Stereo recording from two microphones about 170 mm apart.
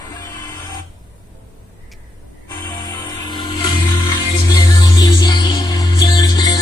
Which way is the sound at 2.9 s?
25° left (ahead or behind).